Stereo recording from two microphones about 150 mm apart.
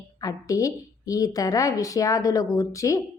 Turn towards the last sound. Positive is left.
turn(degrees=20)  # may be behind; listen again after turning